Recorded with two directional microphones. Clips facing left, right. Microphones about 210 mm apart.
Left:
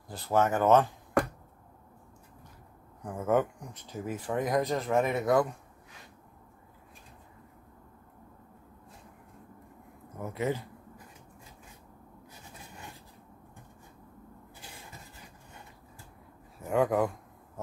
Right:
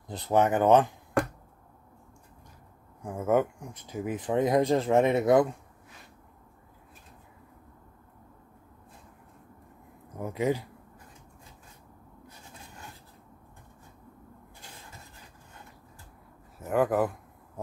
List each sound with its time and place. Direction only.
0.1 s speech: 20° right (ahead or behind)
3.0 s speech: 10° right (ahead or behind)
10.1 s speech: 15° right (ahead or behind)
16.5 s speech: centre (ahead or behind)